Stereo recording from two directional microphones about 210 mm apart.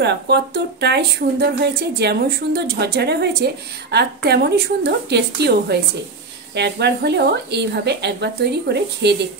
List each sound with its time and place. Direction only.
0.0 s speech: 55° right (ahead or behind)